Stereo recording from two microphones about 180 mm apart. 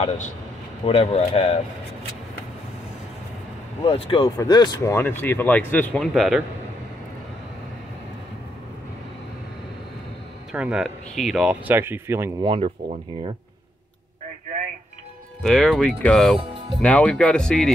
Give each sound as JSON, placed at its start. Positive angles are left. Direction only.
{"t": 0.8, "sound": "speech", "side_deg": 35}
{"t": 3.8, "sound": "speech", "side_deg": 30}
{"t": 10.5, "sound": "speech", "side_deg": -5}
{"t": 12.4, "sound": "speech", "side_deg": -30}
{"t": 15.4, "sound": "speech", "side_deg": 5}